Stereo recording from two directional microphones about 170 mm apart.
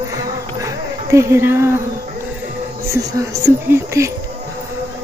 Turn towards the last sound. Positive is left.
turn(degrees=-15)  # may be behind; listen again after turning